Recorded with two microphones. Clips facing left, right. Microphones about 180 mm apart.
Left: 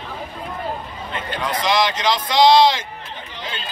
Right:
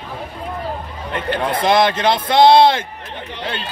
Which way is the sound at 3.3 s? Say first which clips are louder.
Right 6 dB; 65° right (ahead or behind).